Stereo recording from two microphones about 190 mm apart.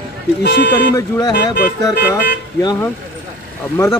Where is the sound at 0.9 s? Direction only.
15° left (ahead or behind).